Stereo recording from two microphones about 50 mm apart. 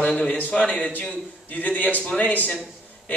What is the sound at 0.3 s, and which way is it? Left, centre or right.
Speech, left.